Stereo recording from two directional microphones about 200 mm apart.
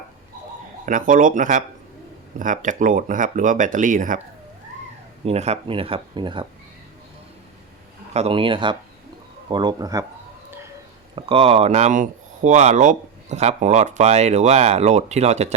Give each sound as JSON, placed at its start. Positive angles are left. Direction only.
{"t": 0.9, "sound": "speech", "side_deg": -40}
{"t": 5.2, "sound": "speech", "side_deg": -30}
{"t": 8.1, "sound": "speech", "side_deg": -30}
{"t": 11.1, "sound": "speech", "side_deg": -30}